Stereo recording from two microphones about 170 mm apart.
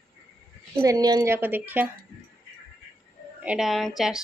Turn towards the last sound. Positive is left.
turn(degrees=0)  # may be behind; listen again after turning